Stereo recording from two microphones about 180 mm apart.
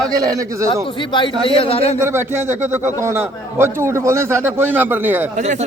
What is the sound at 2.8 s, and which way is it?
A man's voice, 15° right (ahead or behind).